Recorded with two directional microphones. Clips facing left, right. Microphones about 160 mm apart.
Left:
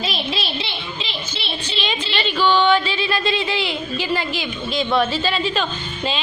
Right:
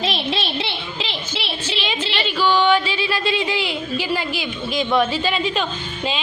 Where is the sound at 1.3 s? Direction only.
90° right.